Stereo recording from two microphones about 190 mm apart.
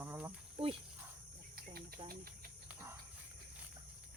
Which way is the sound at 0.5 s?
30° right (ahead or behind).